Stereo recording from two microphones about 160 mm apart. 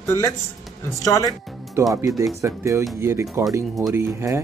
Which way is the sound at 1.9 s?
20° right (ahead or behind).